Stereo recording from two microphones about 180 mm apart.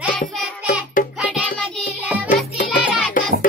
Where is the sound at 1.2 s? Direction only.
5° right (ahead or behind).